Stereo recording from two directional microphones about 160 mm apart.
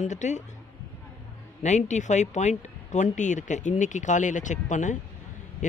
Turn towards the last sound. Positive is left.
turn(degrees=50)  # may be behind; listen again after turning